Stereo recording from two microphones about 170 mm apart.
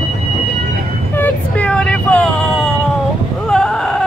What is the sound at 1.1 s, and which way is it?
Vehicle, 10° left (ahead or behind).